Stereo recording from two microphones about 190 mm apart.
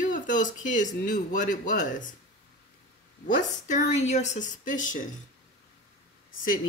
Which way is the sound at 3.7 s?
35° left (ahead or behind).